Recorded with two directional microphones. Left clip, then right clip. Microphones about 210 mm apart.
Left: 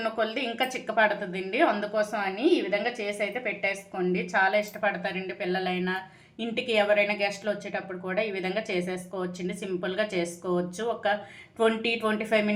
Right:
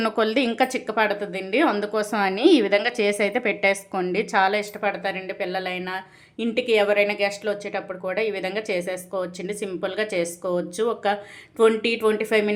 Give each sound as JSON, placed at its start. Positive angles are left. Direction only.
{"t": 0.0, "sound": "speech", "side_deg": -45}